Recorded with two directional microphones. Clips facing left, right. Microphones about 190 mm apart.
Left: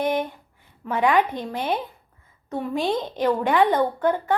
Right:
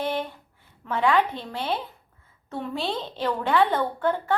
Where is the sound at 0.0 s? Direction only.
15° left (ahead or behind).